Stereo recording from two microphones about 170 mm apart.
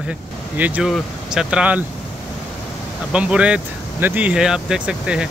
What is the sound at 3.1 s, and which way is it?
Speech, 5° right (ahead or behind).